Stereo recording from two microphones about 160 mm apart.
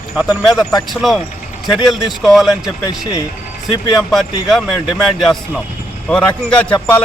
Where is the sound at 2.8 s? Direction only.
20° left (ahead or behind).